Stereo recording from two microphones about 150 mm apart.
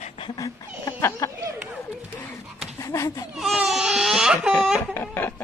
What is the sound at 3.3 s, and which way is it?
Baby cry, centre (ahead or behind).